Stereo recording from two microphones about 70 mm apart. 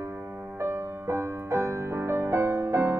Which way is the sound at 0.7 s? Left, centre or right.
Right.